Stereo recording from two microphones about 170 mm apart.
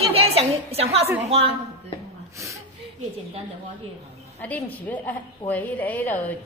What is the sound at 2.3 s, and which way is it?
Speech, 15° right (ahead or behind).